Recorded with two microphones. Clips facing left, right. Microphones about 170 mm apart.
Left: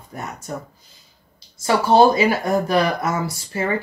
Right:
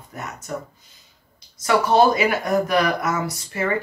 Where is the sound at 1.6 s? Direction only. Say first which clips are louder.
Left 2 dB; 30° left (ahead or behind).